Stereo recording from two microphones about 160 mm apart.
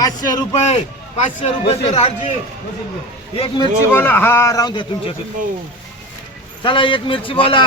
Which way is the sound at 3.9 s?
10° left (ahead or behind).